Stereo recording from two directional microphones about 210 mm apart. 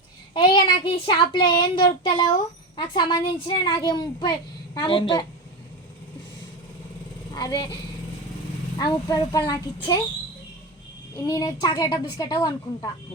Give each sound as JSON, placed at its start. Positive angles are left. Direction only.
{"t": 0.3, "sound": "a woman's voice", "side_deg": 20}
{"t": 7.3, "sound": "speech", "side_deg": 20}
{"t": 8.8, "sound": "a woman's voice", "side_deg": 20}
{"t": 11.3, "sound": "a woman's voice", "side_deg": 20}